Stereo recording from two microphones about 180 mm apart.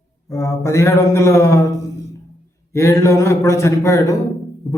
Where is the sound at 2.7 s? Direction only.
15° left (ahead or behind).